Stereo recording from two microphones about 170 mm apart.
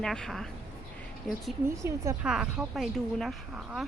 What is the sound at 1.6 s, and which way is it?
Speech, 15° right (ahead or behind).